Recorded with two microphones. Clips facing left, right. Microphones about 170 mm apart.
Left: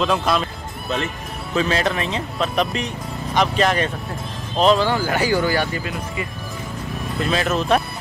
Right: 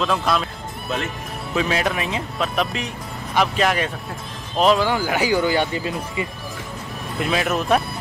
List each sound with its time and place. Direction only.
0.0 s speech: centre (ahead or behind); by 6.2 s 20° right (ahead or behind)
7.2 s speech: 10° right (ahead or behind)